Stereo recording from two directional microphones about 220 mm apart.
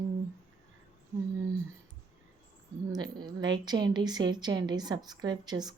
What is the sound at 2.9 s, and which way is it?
A woman's voice, 20° right (ahead or behind).